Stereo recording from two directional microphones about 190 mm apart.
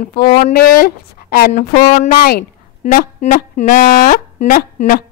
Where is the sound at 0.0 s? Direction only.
50° left (ahead or behind).